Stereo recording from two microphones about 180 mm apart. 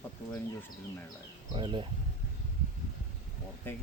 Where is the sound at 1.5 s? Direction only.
30° right (ahead or behind).